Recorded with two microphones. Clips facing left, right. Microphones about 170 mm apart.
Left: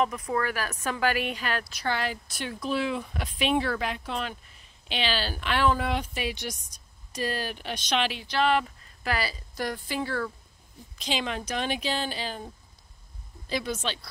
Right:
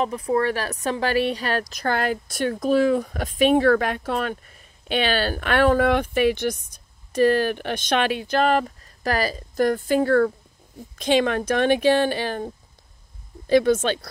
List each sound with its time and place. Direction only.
0.0 s speech: 30° right (ahead or behind); by 12.4 s 60° right (ahead or behind)
13.5 s speech: 55° right (ahead or behind)